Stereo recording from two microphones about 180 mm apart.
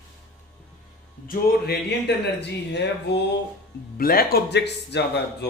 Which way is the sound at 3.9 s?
55° left (ahead or behind).